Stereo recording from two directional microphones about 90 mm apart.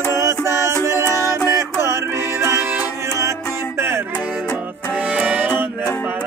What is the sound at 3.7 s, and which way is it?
Music, 25° right (ahead or behind).